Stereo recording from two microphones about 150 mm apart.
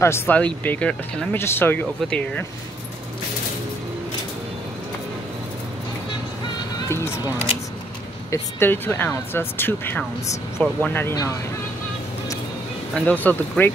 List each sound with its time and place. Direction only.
0.0 s speech: 15° left (ahead or behind)
6.9 s music: 15° left (ahead or behind)
8.3 s speech: 15° left (ahead or behind)
12.9 s speech: 10° left (ahead or behind)